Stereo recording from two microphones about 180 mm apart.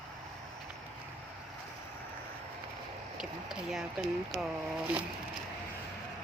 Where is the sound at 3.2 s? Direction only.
5° right (ahead or behind).